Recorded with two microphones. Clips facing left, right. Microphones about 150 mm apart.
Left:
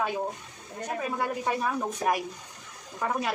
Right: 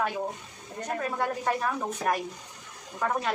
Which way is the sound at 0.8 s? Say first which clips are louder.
Even; 10° left (ahead or behind).